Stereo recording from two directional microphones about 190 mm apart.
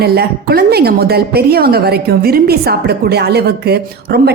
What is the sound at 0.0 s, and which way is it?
A woman's voice, 55° right (ahead or behind).